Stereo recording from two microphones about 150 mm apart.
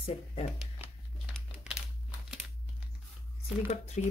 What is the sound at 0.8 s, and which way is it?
Crumpling, 15° right (ahead or behind).